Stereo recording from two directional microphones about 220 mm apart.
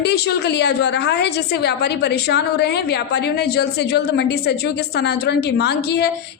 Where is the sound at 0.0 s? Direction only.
50° left (ahead or behind).